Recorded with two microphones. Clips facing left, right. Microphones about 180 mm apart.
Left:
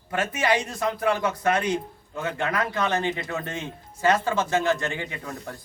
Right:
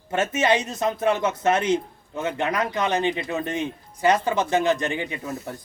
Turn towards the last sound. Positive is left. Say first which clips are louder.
# right 4 dB
turn(degrees=-20)  # may be behind; listen again after turning